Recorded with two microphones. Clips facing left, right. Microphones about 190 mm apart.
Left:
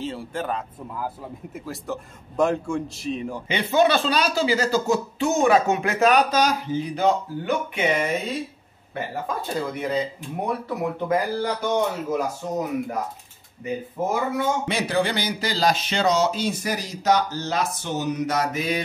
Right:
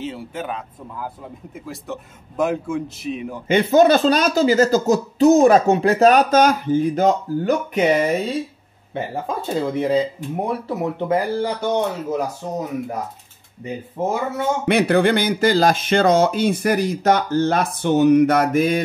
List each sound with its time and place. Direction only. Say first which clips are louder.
0.0 s speech: right 1 dB; 5° right (ahead or behind)
3.7 s speech: right 5 dB; 45° right (ahead or behind)
8.9 s speech: right 3 dB; 25° right (ahead or behind)
14.0 s speech: right 4 dB; 25° right (ahead or behind)
14.7 s speech: right 8 dB; 60° right (ahead or behind)